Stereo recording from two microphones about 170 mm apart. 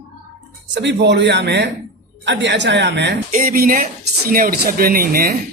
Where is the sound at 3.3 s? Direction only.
55° right (ahead or behind).